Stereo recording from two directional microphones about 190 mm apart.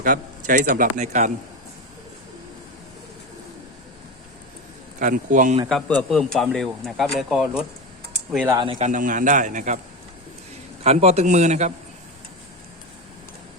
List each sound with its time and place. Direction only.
0.0 s a man's voice: 45° right (ahead or behind)
4.9 s a man's voice: 40° right (ahead or behind)
5.6 s speech: centre (ahead or behind)
8.8 s a man's voice: 45° right (ahead or behind)
10.8 s a man's voice: 35° right (ahead or behind)